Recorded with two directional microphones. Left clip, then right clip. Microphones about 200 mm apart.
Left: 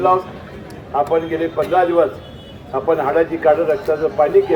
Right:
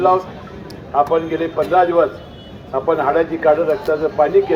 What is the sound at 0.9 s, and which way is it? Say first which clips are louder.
A man's voice: right 1 dB; 15° right (ahead or behind).